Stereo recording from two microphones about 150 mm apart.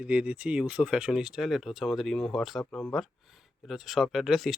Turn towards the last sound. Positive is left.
turn(degrees=0)  # may be behind; listen again after turning